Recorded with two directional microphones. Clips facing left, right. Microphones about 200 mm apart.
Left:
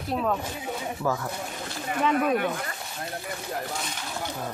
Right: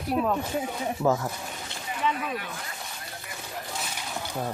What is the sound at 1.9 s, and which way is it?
Speech, 55° left (ahead or behind).